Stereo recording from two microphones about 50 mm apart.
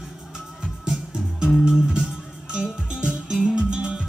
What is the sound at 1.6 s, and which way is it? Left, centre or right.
Music, centre.